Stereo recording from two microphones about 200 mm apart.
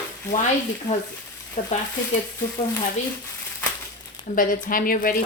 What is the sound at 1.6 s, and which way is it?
Speech, 35° left (ahead or behind).